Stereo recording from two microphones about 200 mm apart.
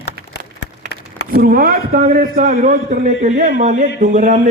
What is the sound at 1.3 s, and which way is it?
A man's voice, 45° right (ahead or behind).